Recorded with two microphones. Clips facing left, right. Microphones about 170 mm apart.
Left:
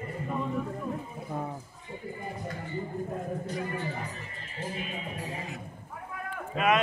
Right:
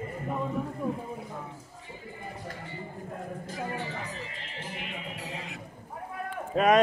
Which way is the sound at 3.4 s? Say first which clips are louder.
Left 1 dB; 90° right.